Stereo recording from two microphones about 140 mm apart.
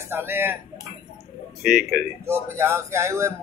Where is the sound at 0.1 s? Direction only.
15° right (ahead or behind).